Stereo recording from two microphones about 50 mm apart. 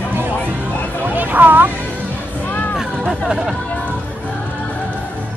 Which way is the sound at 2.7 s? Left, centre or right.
Centre.